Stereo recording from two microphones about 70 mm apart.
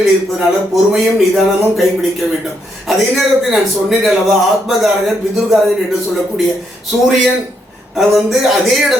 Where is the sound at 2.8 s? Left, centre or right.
Centre.